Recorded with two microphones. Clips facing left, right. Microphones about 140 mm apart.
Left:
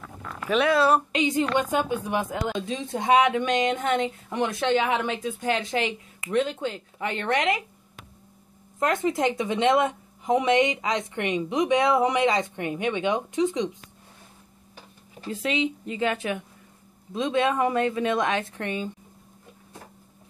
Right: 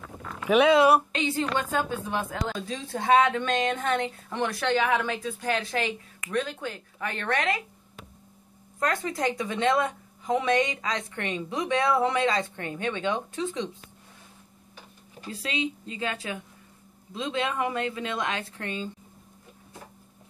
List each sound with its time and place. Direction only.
0.5 s speech: 15° right (ahead or behind)
1.1 s a woman's voice: 15° left (ahead or behind)
8.7 s a woman's voice: 20° left (ahead or behind)
15.2 s a woman's voice: 25° left (ahead or behind)